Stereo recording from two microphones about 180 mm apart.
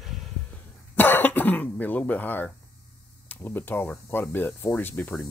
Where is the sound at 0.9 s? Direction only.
10° left (ahead or behind).